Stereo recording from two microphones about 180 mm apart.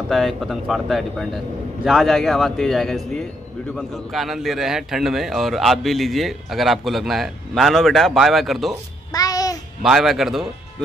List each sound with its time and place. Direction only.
0.1 s a man's voice: centre (ahead or behind)
9.1 s music: 20° left (ahead or behind)
9.8 s a man's voice: centre (ahead or behind)